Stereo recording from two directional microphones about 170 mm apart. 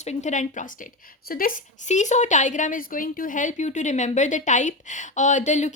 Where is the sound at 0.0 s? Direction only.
45° left (ahead or behind).